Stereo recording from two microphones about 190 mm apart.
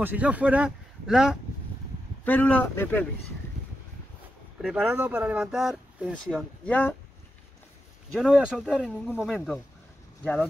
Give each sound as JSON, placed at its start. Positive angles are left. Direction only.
{"t": 0.0, "sound": "speech", "side_deg": -10}
{"t": 2.2, "sound": "a man's voice", "side_deg": 5}
{"t": 4.6, "sound": "speech", "side_deg": -5}
{"t": 6.6, "sound": "a man's voice", "side_deg": 10}
{"t": 8.2, "sound": "a man's voice", "side_deg": 0}